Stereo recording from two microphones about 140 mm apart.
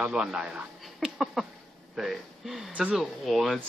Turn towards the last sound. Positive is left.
turn(degrees=0)  # may be behind; listen again after turning